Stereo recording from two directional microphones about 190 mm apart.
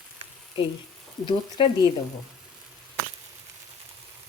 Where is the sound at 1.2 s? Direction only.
25° left (ahead or behind).